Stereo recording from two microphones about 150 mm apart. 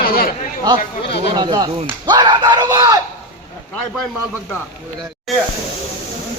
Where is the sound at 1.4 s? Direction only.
30° right (ahead or behind).